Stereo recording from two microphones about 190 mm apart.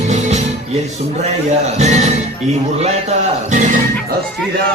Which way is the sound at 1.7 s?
35° right (ahead or behind).